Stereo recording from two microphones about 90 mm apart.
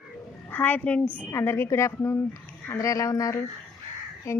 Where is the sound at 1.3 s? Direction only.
30° left (ahead or behind).